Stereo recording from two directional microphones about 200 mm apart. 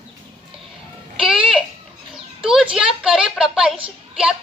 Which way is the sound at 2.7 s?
5° right (ahead or behind).